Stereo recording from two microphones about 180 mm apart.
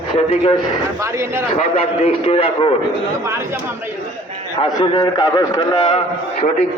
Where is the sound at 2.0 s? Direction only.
30° left (ahead or behind).